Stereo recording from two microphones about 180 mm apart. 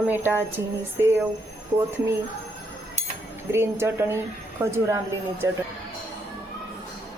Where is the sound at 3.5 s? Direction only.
15° right (ahead or behind).